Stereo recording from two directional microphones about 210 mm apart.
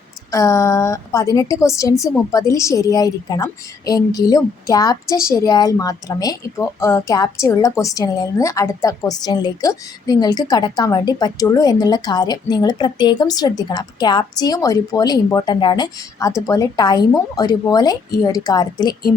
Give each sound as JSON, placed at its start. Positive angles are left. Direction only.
{"t": 0.3, "sound": "a woman's voice", "side_deg": 15}